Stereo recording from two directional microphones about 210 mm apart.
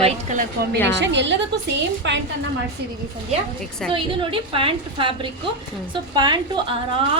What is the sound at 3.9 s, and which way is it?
A woman's voice, 25° right (ahead or behind).